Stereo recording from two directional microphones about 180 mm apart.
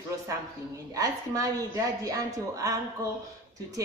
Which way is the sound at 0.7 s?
20° right (ahead or behind).